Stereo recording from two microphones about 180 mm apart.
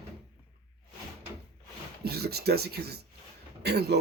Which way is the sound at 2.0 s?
60° right (ahead or behind).